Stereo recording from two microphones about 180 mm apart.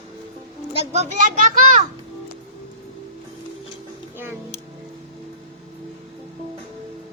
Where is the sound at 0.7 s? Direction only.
40° right (ahead or behind).